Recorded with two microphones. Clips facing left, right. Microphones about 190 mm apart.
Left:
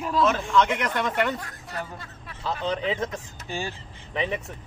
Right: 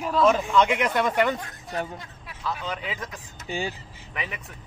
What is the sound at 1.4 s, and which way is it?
Speech, 20° right (ahead or behind).